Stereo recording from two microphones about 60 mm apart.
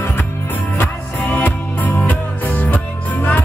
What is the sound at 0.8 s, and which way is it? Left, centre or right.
Music, left.